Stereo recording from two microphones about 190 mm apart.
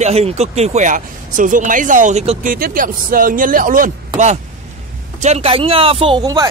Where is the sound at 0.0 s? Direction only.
35° right (ahead or behind).